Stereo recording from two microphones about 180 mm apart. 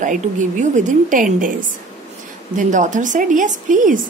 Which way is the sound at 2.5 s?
45° right (ahead or behind).